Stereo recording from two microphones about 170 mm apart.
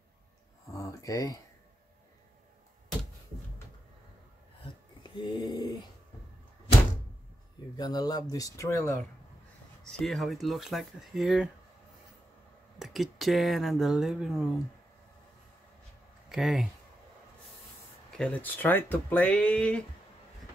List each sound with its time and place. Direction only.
0.7 s a sound: 20° left (ahead or behind)
5.0 s a sound: 25° left (ahead or behind)
7.7 s speech: 25° left (ahead or behind)
9.8 s speech: centre (ahead or behind)
12.7 s speech: centre (ahead or behind)
16.3 s speech: centre (ahead or behind)
18.1 s speech: 5° left (ahead or behind)